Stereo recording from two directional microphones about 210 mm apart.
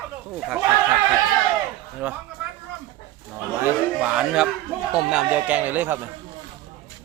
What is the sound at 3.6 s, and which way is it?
Speech, 5° right (ahead or behind).